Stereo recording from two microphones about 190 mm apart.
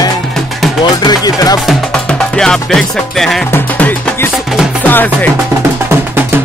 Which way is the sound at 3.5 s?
10° left (ahead or behind).